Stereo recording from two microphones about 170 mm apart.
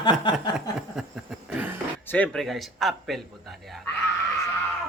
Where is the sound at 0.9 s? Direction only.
5° right (ahead or behind).